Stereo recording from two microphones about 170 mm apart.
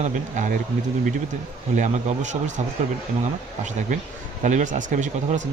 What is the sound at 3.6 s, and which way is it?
Speech, 45° right (ahead or behind).